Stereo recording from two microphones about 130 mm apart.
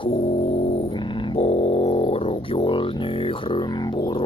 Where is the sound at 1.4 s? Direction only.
50° left (ahead or behind); by 4.2 s 35° left (ahead or behind).